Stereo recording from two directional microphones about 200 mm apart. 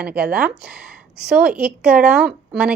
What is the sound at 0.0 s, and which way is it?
Speech, 5° right (ahead or behind).